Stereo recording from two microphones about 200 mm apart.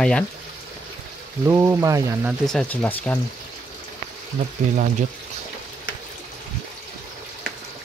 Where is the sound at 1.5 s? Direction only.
15° right (ahead or behind).